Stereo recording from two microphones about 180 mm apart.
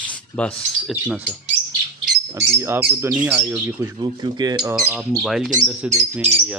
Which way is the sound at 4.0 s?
25° right (ahead or behind).